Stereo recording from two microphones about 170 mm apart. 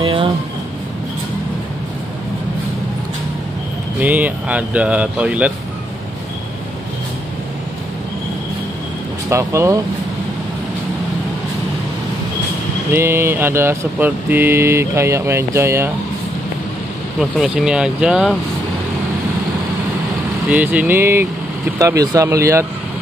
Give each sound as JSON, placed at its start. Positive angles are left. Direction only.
{"t": 0.0, "sound": "a sound", "side_deg": -30}
{"t": 4.0, "sound": "vehicle", "side_deg": -10}
{"t": 9.3, "sound": "vehicle", "side_deg": -15}
{"t": 12.9, "sound": "vehicle", "side_deg": -15}
{"t": 17.2, "sound": "speech", "side_deg": 0}
{"t": 20.4, "sound": "vehicle", "side_deg": -10}
{"t": 21.7, "sound": "speech", "side_deg": -20}